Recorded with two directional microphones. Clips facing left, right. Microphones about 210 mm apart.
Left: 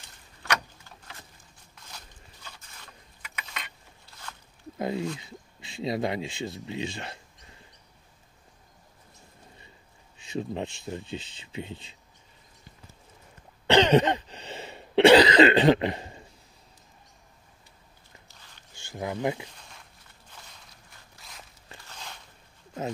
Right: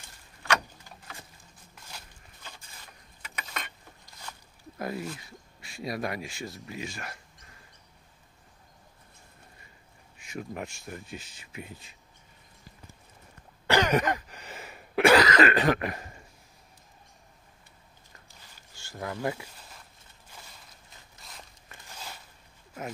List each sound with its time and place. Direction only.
3.3 s a sound: 45° right (ahead or behind)
4.3 s zipper: 10° right (ahead or behind)
4.7 s speech: 20° left (ahead or behind)
10.3 s speech: 25° left (ahead or behind)
13.7 s throat clearing: 25° left (ahead or behind)
18.7 s speech: 20° left (ahead or behind)
21.2 s walk: centre (ahead or behind)
21.8 s a sound: 5° right (ahead or behind)